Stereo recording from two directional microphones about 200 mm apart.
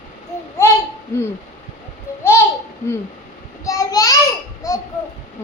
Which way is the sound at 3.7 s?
15° left (ahead or behind).